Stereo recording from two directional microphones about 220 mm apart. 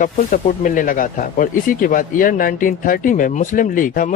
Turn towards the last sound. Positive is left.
turn(degrees=35)  # may be behind; listen again after turning